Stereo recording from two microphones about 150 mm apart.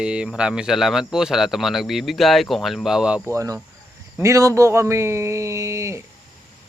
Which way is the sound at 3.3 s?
20° right (ahead or behind).